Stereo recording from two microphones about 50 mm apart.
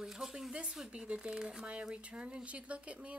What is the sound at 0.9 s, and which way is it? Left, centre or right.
Speech, right.